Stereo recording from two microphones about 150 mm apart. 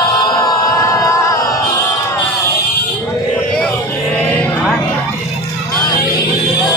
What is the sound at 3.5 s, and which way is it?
Music, 10° left (ahead or behind).